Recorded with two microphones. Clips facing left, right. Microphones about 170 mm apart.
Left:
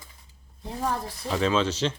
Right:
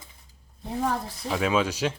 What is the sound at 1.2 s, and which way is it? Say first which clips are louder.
Speech: even; 10° right (ahead or behind).